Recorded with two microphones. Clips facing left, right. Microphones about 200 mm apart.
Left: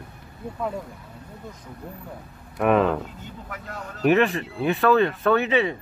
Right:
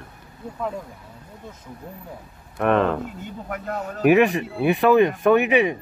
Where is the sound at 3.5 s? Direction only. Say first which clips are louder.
Right 9 dB; 55° right (ahead or behind).